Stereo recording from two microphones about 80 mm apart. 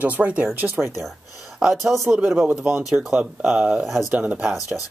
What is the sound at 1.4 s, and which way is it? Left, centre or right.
Speech, centre.